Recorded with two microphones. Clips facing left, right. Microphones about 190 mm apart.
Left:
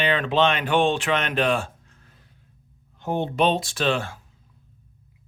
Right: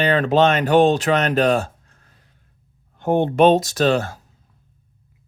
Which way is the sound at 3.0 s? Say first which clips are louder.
Right 7 dB; 55° right (ahead or behind).